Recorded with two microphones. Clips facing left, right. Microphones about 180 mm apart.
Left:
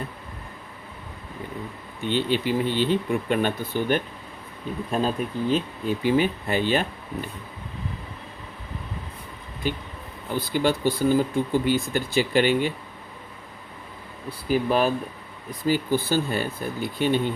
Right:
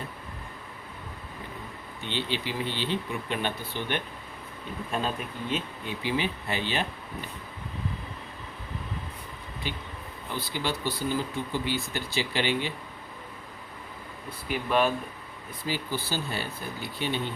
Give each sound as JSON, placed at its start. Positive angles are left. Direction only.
{"t": 2.0, "sound": "speech", "side_deg": 50}
{"t": 9.6, "sound": "speech", "side_deg": 45}
{"t": 14.3, "sound": "speech", "side_deg": 35}
{"t": 15.6, "sound": "speech", "side_deg": 50}